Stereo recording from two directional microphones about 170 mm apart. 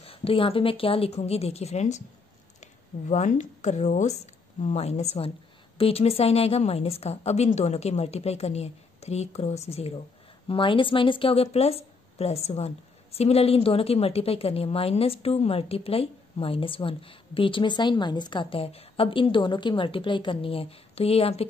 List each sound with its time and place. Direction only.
0.0 s a woman's voice: 35° left (ahead or behind)